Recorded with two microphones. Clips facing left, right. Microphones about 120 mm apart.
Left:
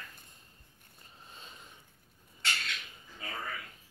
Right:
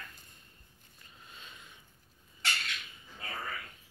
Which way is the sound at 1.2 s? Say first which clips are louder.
Left 1 dB; 35° left (ahead or behind).